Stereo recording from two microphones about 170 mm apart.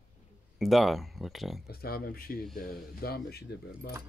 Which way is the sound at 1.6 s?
65° left (ahead or behind).